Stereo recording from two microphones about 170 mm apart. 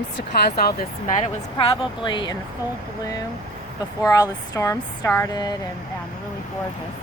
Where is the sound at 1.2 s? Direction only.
30° left (ahead or behind).